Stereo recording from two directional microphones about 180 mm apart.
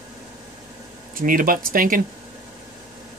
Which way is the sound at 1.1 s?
50° right (ahead or behind).